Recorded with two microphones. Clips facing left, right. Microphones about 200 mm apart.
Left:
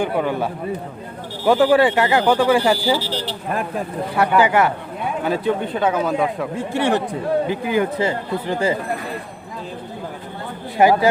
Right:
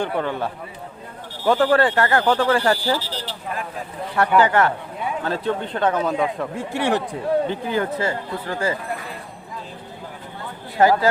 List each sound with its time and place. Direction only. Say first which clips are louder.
0.0 s speech: left 3 dB; 10° left (ahead or behind)
3.5 s speech: left 7 dB; 55° left (ahead or behind)
4.1 s speech: left 1 dB; 10° left (ahead or behind)
6.7 s speech: left 2 dB; 10° right (ahead or behind)
7.4 s speech: left 3 dB; 10° left (ahead or behind)
10.8 s speech: left 2 dB; 15° left (ahead or behind)